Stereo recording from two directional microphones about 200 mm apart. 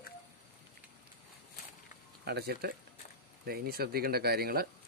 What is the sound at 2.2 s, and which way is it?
Speech, 55° right (ahead or behind).